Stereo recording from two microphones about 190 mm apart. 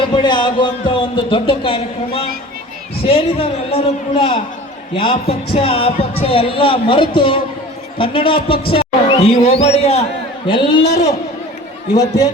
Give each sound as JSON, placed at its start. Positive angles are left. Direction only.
{"t": 0.2, "sound": "a man's voice", "side_deg": 25}
{"t": 11.9, "sound": "speech", "side_deg": 20}